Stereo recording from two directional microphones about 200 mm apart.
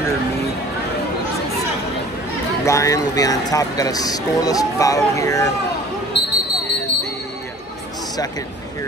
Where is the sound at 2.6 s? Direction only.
15° left (ahead or behind).